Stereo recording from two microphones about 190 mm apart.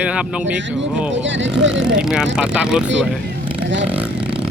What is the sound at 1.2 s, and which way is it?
Speech, 75° right (ahead or behind).